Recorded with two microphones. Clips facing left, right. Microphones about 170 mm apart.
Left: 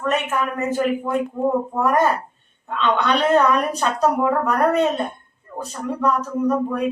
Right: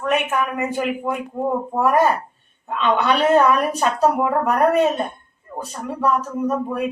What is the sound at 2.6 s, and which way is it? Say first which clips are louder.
Speech: right 1 dB; 10° right (ahead or behind).